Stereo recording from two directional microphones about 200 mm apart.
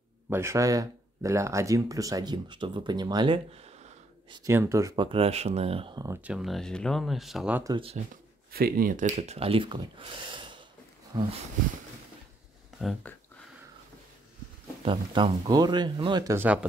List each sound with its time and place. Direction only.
0.3 s speech: 15° right (ahead or behind); by 4.4 s 30° right (ahead or behind)
4.4 s speech: 15° right (ahead or behind)
6.2 s speech: centre (ahead or behind)
7.6 s speech: 25° right (ahead or behind)
8.5 s speech: 50° right (ahead or behind); by 11.3 s 20° right (ahead or behind)
12.7 s speech: centre (ahead or behind)
14.9 s speech: 25° right (ahead or behind)
16.3 s speech: 5° right (ahead or behind)